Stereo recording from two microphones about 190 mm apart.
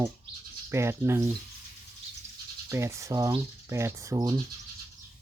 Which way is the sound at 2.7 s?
15° right (ahead or behind).